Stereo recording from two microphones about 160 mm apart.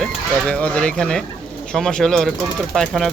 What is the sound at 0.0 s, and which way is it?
Speech, 5° left (ahead or behind).